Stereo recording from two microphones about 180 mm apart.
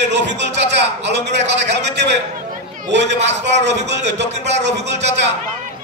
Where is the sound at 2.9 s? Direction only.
75° right (ahead or behind).